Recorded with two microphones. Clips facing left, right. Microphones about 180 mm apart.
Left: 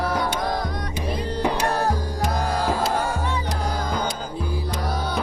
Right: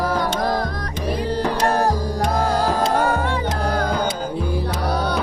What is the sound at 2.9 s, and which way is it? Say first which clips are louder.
Music: right 5 dB; 60° right (ahead or behind).